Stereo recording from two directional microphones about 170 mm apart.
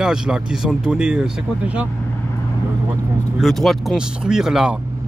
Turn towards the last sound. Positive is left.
turn(degrees=-5)  # may be behind; listen again after turning